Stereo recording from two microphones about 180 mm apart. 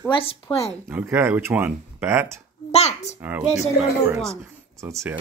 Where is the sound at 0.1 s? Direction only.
30° left (ahead or behind).